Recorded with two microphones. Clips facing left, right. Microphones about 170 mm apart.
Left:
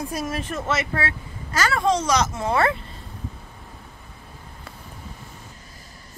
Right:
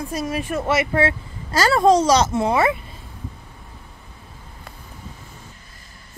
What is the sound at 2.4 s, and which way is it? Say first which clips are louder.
Speech: right 3 dB; 15° right (ahead or behind).